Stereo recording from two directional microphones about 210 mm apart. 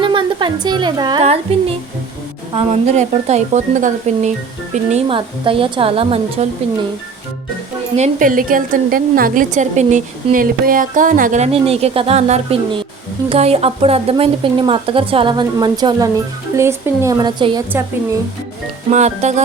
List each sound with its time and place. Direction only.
0.0 s a woman's voice: 25° right (ahead or behind)
7.9 s a woman's voice: 35° right (ahead or behind); by 17.6 s 20° right (ahead or behind)
18.9 s a woman's voice: 35° right (ahead or behind)